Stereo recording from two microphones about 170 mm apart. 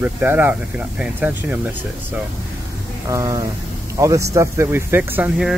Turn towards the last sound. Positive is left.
turn(degrees=-10)  # may be behind; listen again after turning